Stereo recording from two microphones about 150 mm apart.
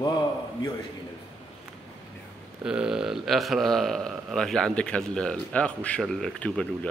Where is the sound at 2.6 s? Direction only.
5° right (ahead or behind).